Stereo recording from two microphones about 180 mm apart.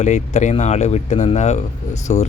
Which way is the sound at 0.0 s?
40° left (ahead or behind).